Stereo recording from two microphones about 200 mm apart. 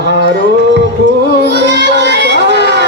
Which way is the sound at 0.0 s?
55° right (ahead or behind).